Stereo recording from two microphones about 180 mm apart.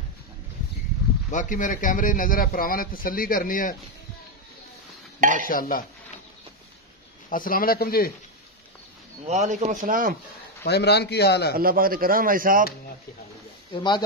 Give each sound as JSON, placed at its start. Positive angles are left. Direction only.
{"t": 1.3, "sound": "a man's voice", "side_deg": 45}
{"t": 5.2, "sound": "speech", "side_deg": -50}
{"t": 5.5, "sound": "a man's voice", "side_deg": 50}
{"t": 7.2, "sound": "speech", "side_deg": 50}
{"t": 9.3, "sound": "speech", "side_deg": -40}
{"t": 10.6, "sound": "a man's voice", "side_deg": 65}
{"t": 11.5, "sound": "speech", "side_deg": -55}